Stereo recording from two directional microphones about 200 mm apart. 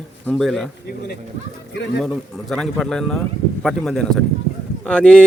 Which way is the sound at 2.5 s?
5° left (ahead or behind).